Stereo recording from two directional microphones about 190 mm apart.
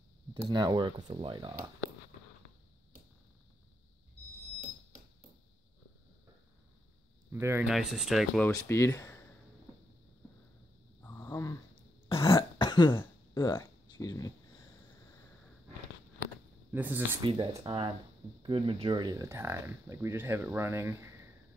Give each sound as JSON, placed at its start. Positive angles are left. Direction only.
{"t": 0.5, "sound": "speech", "side_deg": -20}
{"t": 7.2, "sound": "speech", "side_deg": -10}
{"t": 8.6, "sound": "speech", "side_deg": 15}
{"t": 11.0, "sound": "a sound", "side_deg": 10}
{"t": 11.7, "sound": "a sound", "side_deg": 25}
{"t": 12.3, "sound": "throat clearing", "side_deg": 20}
{"t": 13.0, "sound": "a sound", "side_deg": 15}
{"t": 16.7, "sound": "speech", "side_deg": -10}
{"t": 17.2, "sound": "speech", "side_deg": -25}